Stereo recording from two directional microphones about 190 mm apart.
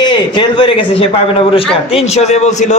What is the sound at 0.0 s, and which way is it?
A man's voice, 25° left (ahead or behind).